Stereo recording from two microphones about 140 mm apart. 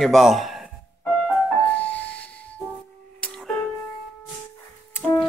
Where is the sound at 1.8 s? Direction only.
10° left (ahead or behind).